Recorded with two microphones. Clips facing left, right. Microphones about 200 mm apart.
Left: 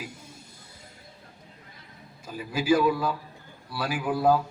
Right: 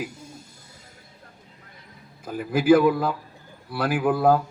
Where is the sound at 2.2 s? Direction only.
55° right (ahead or behind).